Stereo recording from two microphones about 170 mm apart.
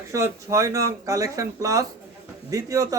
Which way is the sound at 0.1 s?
20° right (ahead or behind).